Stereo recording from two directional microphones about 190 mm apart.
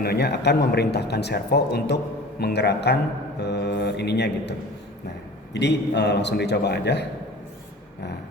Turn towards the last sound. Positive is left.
turn(degrees=65)  # may be behind; listen again after turning